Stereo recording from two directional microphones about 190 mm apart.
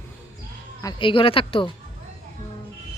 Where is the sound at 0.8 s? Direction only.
25° left (ahead or behind).